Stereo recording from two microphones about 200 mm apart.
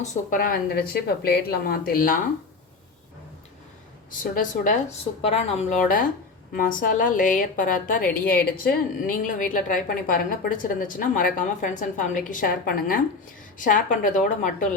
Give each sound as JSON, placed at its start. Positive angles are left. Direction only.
{"t": 0.0, "sound": "a woman's voice", "side_deg": 45}
{"t": 4.2, "sound": "a woman's voice", "side_deg": 40}